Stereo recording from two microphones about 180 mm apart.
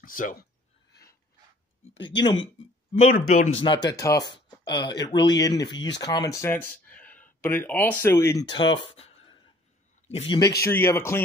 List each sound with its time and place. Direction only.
0.0 s speech: 50° left (ahead or behind)
2.0 s speech: 25° left (ahead or behind)
3.1 s speech: 45° left (ahead or behind)
3.5 s speech: 25° left (ahead or behind)
8.5 s a sound: 25° left (ahead or behind)
10.0 s speech: 30° left (ahead or behind); by 11.1 s 15° left (ahead or behind)